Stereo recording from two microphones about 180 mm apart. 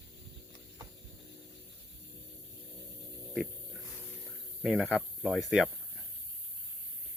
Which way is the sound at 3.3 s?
5° right (ahead or behind).